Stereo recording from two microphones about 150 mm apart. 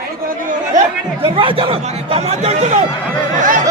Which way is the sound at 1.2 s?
35° right (ahead or behind).